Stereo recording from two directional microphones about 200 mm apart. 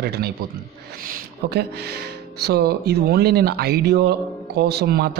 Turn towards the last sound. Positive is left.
turn(degrees=-50)  # may be behind; listen again after turning